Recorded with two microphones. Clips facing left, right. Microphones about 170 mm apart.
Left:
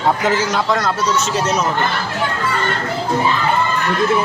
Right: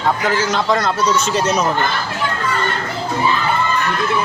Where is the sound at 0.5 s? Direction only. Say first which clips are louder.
Right 1 dB; 5° left (ahead or behind).